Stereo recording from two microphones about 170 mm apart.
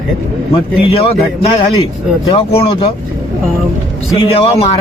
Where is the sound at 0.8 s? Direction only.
35° left (ahead or behind).